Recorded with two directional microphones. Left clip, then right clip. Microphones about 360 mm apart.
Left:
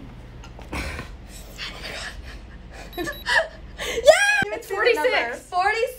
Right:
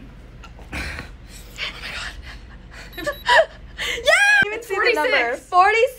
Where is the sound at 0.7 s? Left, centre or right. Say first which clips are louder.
Right 2 dB; centre.